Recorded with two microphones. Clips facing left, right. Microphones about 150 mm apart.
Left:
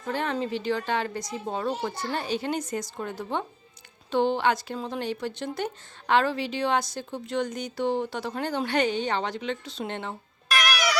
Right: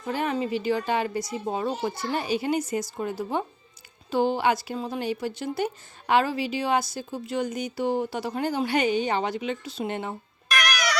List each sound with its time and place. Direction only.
0.1 s speech: 10° right (ahead or behind)